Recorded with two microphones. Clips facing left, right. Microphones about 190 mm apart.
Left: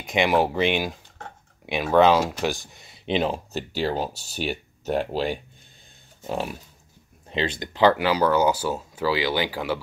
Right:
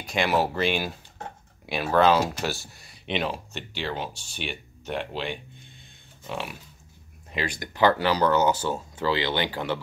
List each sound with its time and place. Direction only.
0.0 s speech: 15° left (ahead or behind)
3.1 s speech: 30° left (ahead or behind)
7.2 s speech: 25° left (ahead or behind); by 9.8 s 10° left (ahead or behind)